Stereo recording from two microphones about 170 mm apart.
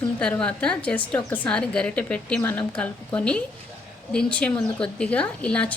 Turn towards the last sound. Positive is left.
turn(degrees=5)  # may be behind; listen again after turning